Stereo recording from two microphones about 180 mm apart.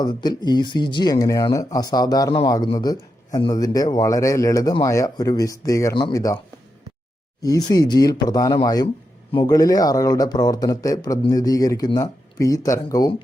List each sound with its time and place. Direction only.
0.0 s speech: 25° left (ahead or behind)
7.4 s speech: 20° left (ahead or behind)